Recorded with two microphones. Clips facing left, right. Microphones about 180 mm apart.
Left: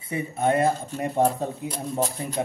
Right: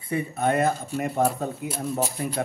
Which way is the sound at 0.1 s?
25° left (ahead or behind).